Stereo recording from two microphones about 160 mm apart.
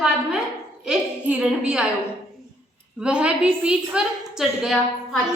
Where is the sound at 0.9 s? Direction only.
5° right (ahead or behind).